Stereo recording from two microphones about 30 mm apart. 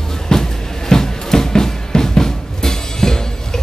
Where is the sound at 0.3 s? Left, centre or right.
Centre.